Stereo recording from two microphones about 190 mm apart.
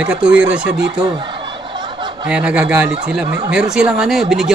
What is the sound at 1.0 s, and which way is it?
Snicker, 25° right (ahead or behind).